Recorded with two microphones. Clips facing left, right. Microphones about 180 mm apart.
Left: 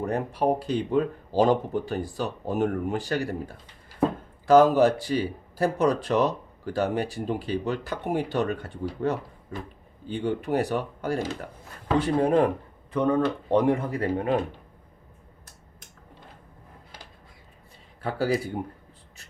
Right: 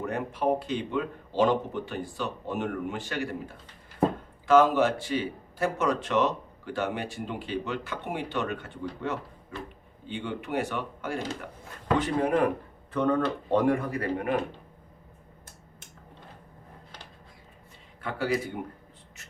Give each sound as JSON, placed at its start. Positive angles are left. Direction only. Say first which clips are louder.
{"t": 0.0, "sound": "speech", "louder": "left 3 dB", "side_deg": 35}
{"t": 4.4, "sound": "speech", "louder": "left 4 dB", "side_deg": 40}
{"t": 12.9, "sound": "speech", "louder": "left 2 dB", "side_deg": 15}
{"t": 18.0, "sound": "speech", "louder": "left 3 dB", "side_deg": 35}